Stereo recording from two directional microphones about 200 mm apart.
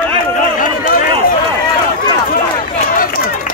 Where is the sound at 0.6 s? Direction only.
40° left (ahead or behind).